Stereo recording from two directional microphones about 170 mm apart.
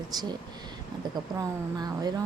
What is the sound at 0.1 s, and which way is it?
Speech, 25° right (ahead or behind).